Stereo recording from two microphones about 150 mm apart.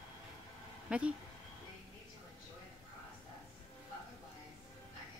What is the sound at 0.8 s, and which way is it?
Speech, 10° right (ahead or behind).